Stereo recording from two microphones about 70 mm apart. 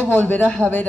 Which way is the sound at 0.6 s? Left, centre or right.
Right.